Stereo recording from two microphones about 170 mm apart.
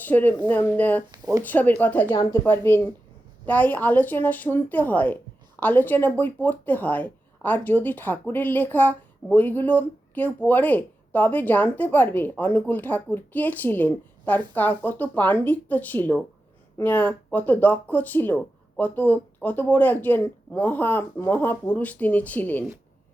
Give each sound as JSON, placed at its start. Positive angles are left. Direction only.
{"t": 0.0, "sound": "speech", "side_deg": 10}
{"t": 1.1, "sound": "a sound", "side_deg": -25}
{"t": 1.5, "sound": "speech", "side_deg": 10}